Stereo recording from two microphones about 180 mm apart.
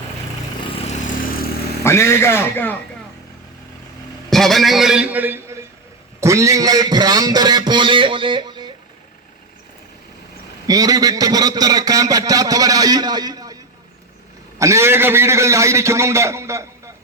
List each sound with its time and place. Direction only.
0.9 s vehicle: 45° left (ahead or behind)
1.8 s a man's voice: 15° left (ahead or behind)
4.3 s a man's voice: centre (ahead or behind); by 8.7 s 25° right (ahead or behind)
10.7 s a man's voice: 20° right (ahead or behind)
14.6 s a man's voice: 15° right (ahead or behind)